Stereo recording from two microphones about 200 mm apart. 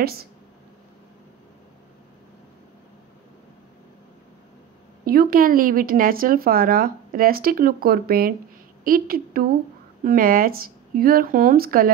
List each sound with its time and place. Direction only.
5.0 s speech: 45° right (ahead or behind)